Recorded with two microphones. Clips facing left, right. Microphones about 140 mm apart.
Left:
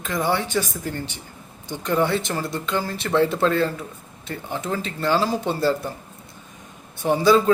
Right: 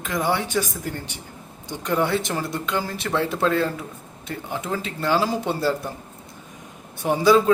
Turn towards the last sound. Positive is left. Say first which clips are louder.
# even
turn(degrees=-10)  # may be behind; listen again after turning